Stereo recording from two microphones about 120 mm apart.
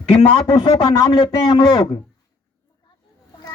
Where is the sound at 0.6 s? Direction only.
40° left (ahead or behind).